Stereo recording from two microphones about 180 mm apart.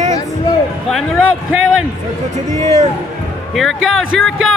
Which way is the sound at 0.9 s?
Centre (ahead or behind).